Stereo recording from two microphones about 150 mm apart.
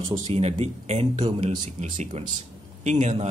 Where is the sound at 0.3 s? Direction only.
40° right (ahead or behind).